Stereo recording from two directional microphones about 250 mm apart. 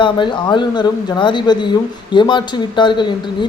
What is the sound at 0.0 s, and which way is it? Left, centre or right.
Speech, centre.